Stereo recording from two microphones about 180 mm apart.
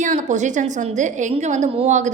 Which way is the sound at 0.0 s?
45° right (ahead or behind).